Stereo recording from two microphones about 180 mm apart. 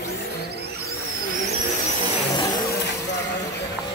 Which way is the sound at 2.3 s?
20° left (ahead or behind).